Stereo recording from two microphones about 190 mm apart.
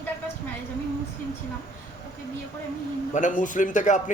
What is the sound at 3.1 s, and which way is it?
Speech, 40° left (ahead or behind).